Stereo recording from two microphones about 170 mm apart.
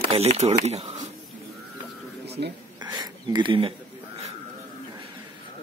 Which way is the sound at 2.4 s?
75° right (ahead or behind).